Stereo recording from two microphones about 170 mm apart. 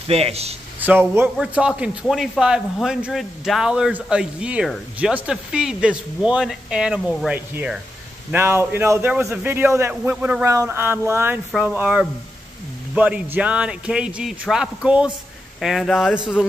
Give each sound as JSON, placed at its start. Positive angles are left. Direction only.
{"t": 0.1, "sound": "speech", "side_deg": -35}
{"t": 0.7, "sound": "a man's voice", "side_deg": -10}